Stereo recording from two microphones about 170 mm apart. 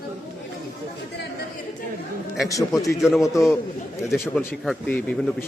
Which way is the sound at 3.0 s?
Centre (ahead or behind).